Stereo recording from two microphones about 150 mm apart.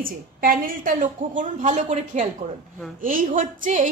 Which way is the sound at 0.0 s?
70° right (ahead or behind).